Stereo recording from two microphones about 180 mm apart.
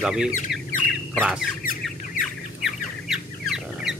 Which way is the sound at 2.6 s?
Centre (ahead or behind).